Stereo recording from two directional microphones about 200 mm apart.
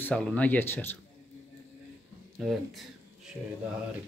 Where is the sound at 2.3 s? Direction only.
Centre (ahead or behind).